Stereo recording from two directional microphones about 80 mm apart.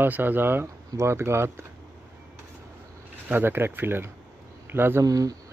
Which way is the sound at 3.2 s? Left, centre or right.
Right.